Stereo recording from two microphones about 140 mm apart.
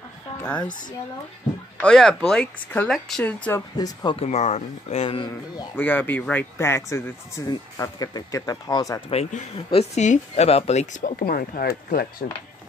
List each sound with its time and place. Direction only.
1.8 s speech: 5° left (ahead or behind)
3.7 s speech: 30° left (ahead or behind)
4.2 s speech: 50° left (ahead or behind)
5.8 s speech: 15° left (ahead or behind)
9.1 s speech: 55° left (ahead or behind); by 12.3 s 90° left